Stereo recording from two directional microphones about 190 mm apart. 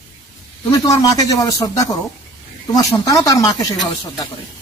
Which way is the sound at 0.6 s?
15° left (ahead or behind).